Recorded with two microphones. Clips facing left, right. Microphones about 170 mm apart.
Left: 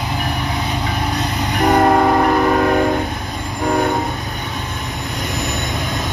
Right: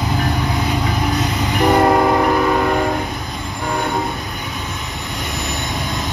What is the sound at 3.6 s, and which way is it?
Train, 40° left (ahead or behind).